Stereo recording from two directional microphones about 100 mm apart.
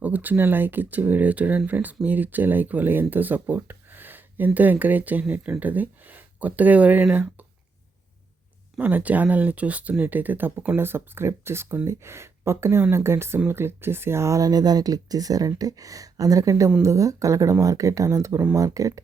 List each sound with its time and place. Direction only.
0.0 s speech: 20° right (ahead or behind)
8.8 s speech: 15° right (ahead or behind); by 18.9 s 35° right (ahead or behind)